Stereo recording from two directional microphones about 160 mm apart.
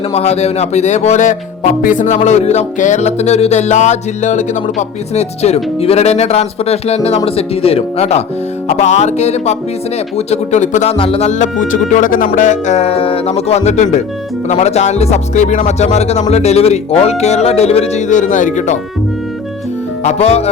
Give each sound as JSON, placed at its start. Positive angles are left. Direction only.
{"t": 0.1, "sound": "speech", "side_deg": 40}
{"t": 10.9, "sound": "speech", "side_deg": 35}
{"t": 20.1, "sound": "speech", "side_deg": 40}